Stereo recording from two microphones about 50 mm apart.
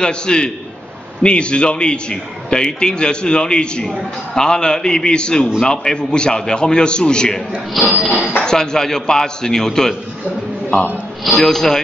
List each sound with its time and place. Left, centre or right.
0.0 s a man's voice: centre
7.8 s a sound: centre
8.4 s a man's voice: centre
11.2 s a man's voice: centre